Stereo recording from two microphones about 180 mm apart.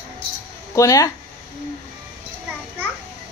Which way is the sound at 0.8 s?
20° left (ahead or behind).